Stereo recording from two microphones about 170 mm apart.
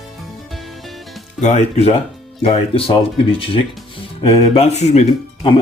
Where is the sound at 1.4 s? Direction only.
45° left (ahead or behind).